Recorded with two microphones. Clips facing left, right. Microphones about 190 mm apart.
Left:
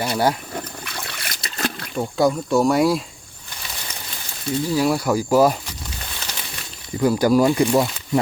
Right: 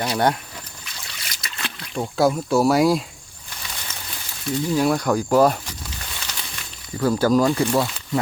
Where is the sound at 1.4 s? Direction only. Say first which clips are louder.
Left 8 dB; 40° left (ahead or behind).